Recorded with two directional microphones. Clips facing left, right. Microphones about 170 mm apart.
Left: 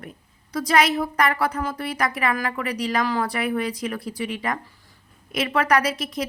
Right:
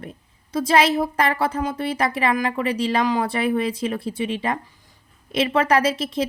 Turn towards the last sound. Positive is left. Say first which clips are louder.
# right 3 dB
turn(degrees=-25)  # may be behind; listen again after turning